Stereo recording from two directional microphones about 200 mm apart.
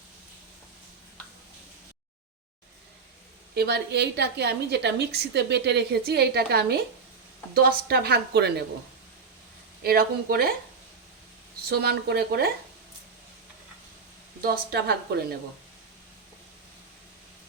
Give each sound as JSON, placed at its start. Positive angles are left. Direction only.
{"t": 3.5, "sound": "a woman's voice", "side_deg": -55}
{"t": 9.8, "sound": "a woman's voice", "side_deg": -50}
{"t": 11.7, "sound": "a woman's voice", "side_deg": -55}
{"t": 14.4, "sound": "a woman's voice", "side_deg": -50}